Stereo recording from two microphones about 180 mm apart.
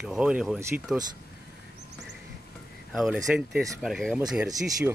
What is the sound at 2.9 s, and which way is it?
Speech, centre (ahead or behind).